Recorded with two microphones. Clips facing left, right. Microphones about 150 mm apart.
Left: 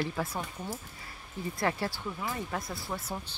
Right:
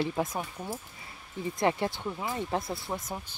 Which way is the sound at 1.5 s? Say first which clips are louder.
Right 4 dB; 20° right (ahead or behind).